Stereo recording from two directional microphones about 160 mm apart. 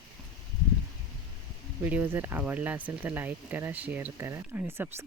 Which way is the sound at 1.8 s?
10° right (ahead or behind).